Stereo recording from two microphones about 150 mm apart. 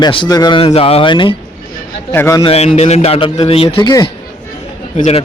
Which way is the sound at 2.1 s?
15° left (ahead or behind).